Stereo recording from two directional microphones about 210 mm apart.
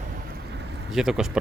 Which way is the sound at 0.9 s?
Centre (ahead or behind).